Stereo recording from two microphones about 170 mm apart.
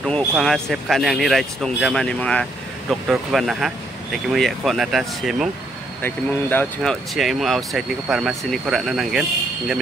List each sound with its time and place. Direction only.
0.4 s speech: centre (ahead or behind)
6.0 s speech: 10° left (ahead or behind)